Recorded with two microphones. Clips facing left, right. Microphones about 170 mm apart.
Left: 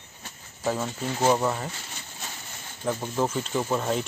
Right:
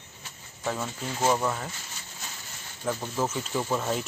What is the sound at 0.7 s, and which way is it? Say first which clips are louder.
Speech: left 4 dB; 5° left (ahead or behind).